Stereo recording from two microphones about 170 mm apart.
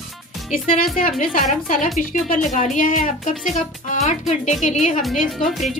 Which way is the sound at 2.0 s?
50° left (ahead or behind).